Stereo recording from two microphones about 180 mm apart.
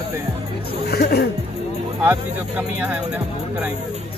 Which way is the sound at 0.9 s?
60° left (ahead or behind).